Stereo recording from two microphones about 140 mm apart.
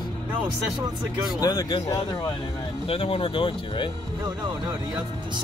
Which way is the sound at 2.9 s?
40° left (ahead or behind).